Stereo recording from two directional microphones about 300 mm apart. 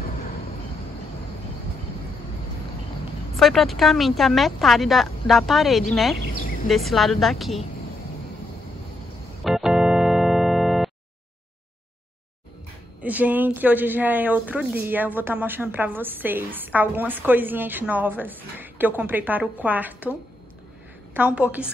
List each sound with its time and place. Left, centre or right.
3.3 s a woman's voice: centre
9.4 s organ: centre
13.0 s a woman's voice: centre